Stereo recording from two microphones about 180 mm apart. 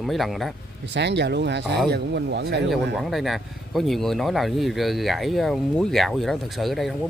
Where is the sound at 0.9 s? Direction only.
75° right (ahead or behind).